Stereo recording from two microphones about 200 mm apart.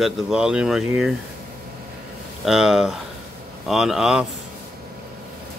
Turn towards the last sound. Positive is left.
turn(degrees=-5)  # may be behind; listen again after turning